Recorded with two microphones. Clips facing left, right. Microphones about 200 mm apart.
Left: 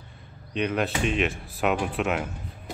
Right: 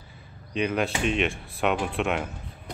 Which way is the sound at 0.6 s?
Centre (ahead or behind).